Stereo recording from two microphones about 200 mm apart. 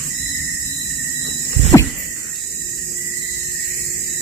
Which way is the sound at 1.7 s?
15° left (ahead or behind).